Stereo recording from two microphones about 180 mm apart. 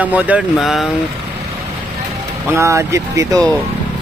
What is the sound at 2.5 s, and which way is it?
Speech, 15° right (ahead or behind).